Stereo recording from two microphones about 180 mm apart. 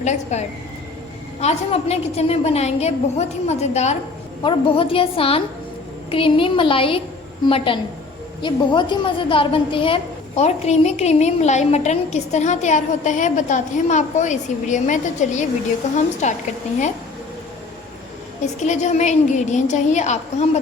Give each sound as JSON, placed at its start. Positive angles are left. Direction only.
{"t": 0.0, "sound": "a woman's voice", "side_deg": 40}
{"t": 18.6, "sound": "a woman's voice", "side_deg": 40}